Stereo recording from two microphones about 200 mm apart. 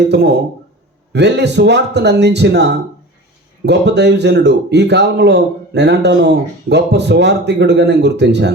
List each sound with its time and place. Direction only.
0.1 s a man's voice: 60° right (ahead or behind)